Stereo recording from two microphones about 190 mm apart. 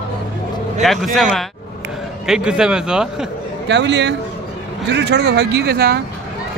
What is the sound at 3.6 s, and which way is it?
Speech, 70° right (ahead or behind).